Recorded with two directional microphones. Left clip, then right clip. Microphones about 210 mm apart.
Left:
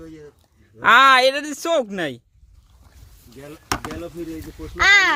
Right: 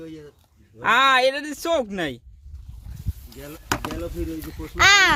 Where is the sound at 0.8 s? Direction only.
20° left (ahead or behind).